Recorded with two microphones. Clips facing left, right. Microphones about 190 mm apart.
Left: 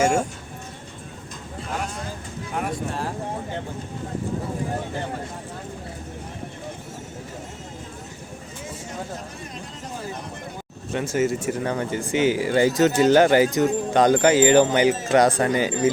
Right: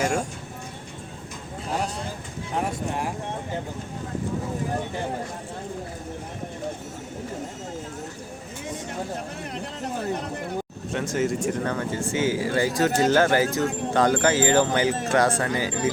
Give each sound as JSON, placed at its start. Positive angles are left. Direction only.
{"t": 2.6, "sound": "speech", "side_deg": -15}
{"t": 10.9, "sound": "speech", "side_deg": 5}